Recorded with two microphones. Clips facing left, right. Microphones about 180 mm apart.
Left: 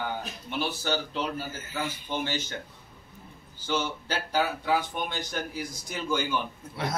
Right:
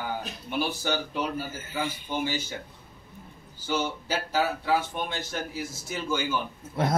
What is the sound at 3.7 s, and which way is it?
Speech, 5° right (ahead or behind).